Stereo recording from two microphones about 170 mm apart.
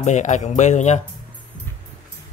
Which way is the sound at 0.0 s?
45° left (ahead or behind).